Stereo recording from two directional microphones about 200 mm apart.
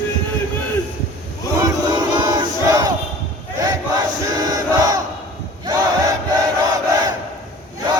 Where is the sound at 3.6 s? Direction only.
20° right (ahead or behind).